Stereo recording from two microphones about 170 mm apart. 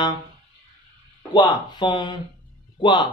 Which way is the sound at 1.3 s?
25° left (ahead or behind).